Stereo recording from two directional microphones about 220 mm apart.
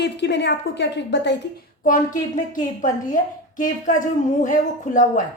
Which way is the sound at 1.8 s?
40° left (ahead or behind).